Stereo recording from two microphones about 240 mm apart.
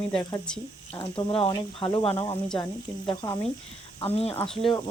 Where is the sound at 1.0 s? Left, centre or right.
Centre.